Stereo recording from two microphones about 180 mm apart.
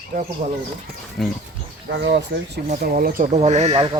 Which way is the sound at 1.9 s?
80° right.